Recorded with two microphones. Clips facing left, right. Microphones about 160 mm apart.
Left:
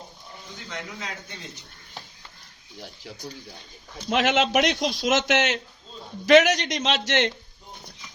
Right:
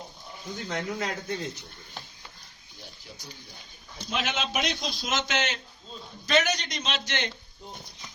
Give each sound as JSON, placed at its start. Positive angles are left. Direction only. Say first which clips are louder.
{"t": 0.7, "sound": "a man's voice", "louder": "right 5 dB", "side_deg": -50}
{"t": 4.1, "sound": "a man's voice", "louder": "left 9 dB", "side_deg": 70}
{"t": 6.2, "sound": "a man's voice", "louder": "left 9 dB", "side_deg": 90}